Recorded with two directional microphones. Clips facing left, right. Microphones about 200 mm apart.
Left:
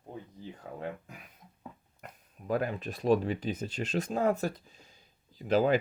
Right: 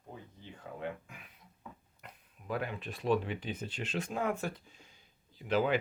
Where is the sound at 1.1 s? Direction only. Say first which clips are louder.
Left 4 dB; 40° left (ahead or behind).